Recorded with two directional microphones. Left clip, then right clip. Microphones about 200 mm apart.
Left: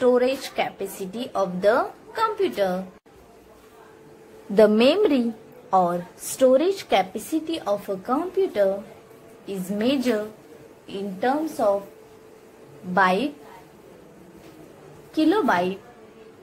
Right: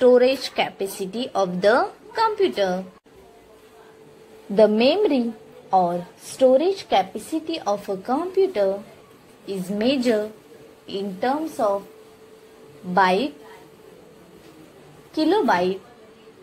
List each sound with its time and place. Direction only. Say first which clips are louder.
0.0 s a woman's voice: right 4 dB; 20° right (ahead or behind)
4.6 s a woman's voice: even; centre (ahead or behind)
12.9 s a woman's voice: right 2 dB; 20° right (ahead or behind)
15.1 s a woman's voice: right 1 dB; 15° right (ahead or behind)